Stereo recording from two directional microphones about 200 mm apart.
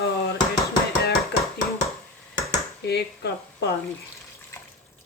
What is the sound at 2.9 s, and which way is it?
Speech, 55° left (ahead or behind).